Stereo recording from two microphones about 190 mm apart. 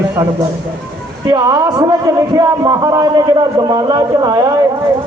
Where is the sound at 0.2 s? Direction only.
15° right (ahead or behind).